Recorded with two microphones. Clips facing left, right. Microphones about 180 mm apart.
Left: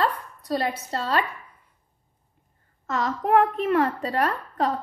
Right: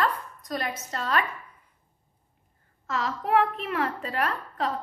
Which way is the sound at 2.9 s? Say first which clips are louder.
Left 4 dB; 45° left (ahead or behind).